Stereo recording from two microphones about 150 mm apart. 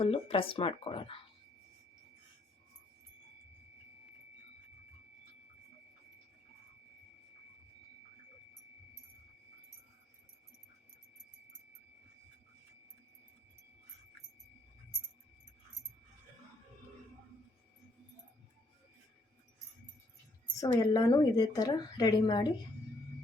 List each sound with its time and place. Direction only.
0.0 s speech: 40° left (ahead or behind)
20.6 s a woman's voice: 25° left (ahead or behind)